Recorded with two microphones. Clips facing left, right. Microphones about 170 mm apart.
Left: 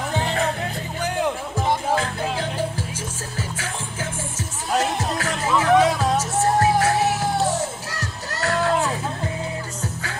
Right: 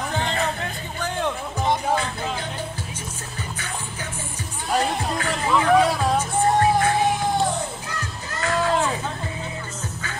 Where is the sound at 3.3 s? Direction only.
90° left.